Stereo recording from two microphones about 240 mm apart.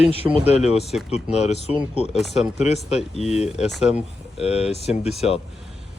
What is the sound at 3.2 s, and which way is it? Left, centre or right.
Speech, left.